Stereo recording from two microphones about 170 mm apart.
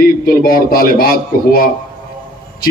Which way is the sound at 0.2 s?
60° left (ahead or behind).